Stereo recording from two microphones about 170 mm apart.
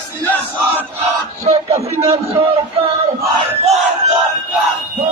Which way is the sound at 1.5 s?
40° right (ahead or behind).